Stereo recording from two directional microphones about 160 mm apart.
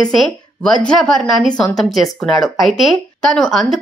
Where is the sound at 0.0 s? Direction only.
5° left (ahead or behind).